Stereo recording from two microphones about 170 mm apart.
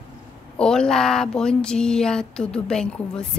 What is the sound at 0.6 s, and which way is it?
A woman's voice, 5° left (ahead or behind).